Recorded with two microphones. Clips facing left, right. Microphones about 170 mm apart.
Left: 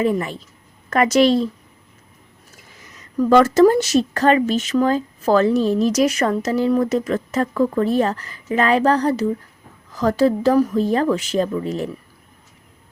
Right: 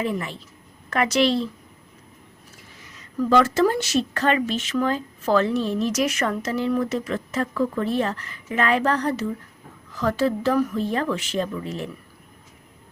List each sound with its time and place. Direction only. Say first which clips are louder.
0.0 s a woman's voice: left 7 dB; 45° left (ahead or behind)
3.2 s speech: left 6 dB; 45° left (ahead or behind)